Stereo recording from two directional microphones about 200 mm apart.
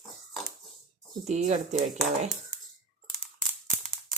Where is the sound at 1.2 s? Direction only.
35° right (ahead or behind).